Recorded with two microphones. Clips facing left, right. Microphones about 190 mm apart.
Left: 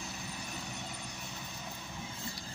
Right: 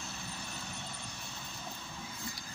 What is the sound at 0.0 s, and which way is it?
Vehicle, 15° left (ahead or behind).